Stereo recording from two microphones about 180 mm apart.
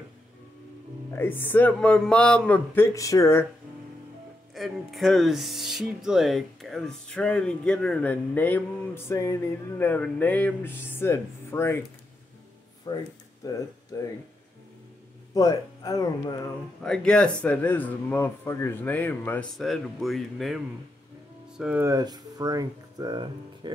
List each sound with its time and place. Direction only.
1.1 s speech: 10° left (ahead or behind)
4.6 s speech: centre (ahead or behind)
12.9 s speech: 20° left (ahead or behind)
15.3 s speech: 20° left (ahead or behind)
16.8 s speech: 5° left (ahead or behind)
19.6 s speech: centre (ahead or behind)
21.8 s speech: 20° right (ahead or behind)